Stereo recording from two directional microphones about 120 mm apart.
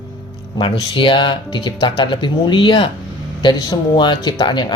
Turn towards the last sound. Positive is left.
turn(degrees=40)  # may be behind; listen again after turning